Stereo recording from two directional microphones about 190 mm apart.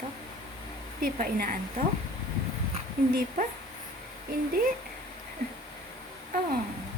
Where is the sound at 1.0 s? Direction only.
50° right (ahead or behind).